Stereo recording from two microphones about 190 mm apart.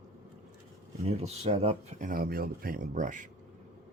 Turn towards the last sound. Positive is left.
turn(degrees=-40)  # may be behind; listen again after turning